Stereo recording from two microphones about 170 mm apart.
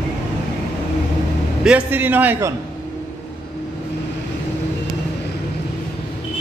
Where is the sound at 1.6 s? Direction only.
10° right (ahead or behind).